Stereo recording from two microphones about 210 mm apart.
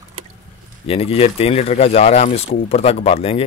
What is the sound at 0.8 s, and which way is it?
Speech, 30° left (ahead or behind).